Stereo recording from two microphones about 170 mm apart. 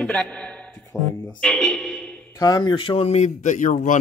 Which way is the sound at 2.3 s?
20° left (ahead or behind).